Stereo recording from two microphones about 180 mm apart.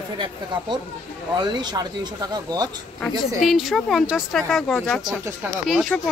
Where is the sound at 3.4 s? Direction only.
Centre (ahead or behind).